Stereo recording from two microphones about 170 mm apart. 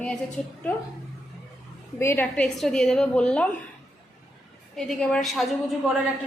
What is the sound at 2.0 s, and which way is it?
A woman's voice, 15° left (ahead or behind).